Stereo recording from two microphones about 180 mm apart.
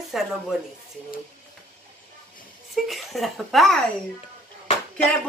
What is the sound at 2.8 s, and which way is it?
A woman's voice, centre (ahead or behind).